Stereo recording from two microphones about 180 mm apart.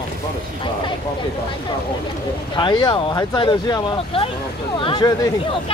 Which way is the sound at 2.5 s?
25° left (ahead or behind).